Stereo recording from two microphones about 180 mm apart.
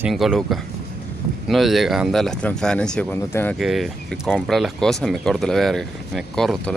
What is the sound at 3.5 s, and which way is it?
Speech, centre (ahead or behind).